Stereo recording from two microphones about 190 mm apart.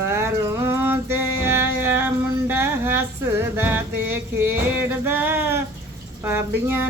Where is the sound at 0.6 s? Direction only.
10° right (ahead or behind).